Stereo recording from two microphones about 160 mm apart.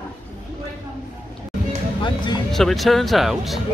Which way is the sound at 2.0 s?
30° left (ahead or behind).